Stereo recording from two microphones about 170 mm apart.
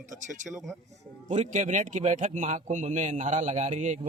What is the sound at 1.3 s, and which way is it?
A man's voice, 45° right (ahead or behind).